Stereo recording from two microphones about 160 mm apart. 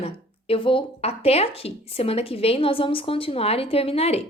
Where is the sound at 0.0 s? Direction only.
35° left (ahead or behind).